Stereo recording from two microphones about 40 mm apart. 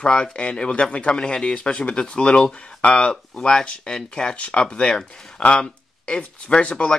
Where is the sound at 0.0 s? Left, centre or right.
Left.